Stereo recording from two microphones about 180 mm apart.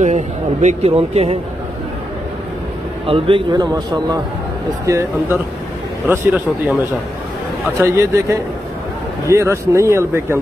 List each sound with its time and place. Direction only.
0.0 s speech: 40° right (ahead or behind)
3.1 s a man's voice: 30° right (ahead or behind)
6.0 s a man's voice: 5° right (ahead or behind)
7.8 s speech: 15° right (ahead or behind)